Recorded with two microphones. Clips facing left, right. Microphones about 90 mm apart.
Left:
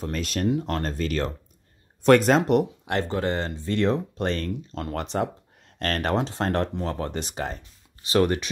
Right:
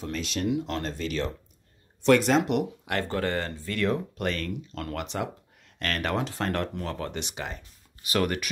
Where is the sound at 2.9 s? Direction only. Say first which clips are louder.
Left 3 dB; 20° left (ahead or behind).